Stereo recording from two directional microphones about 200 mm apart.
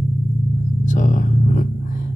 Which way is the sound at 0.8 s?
40° left (ahead or behind).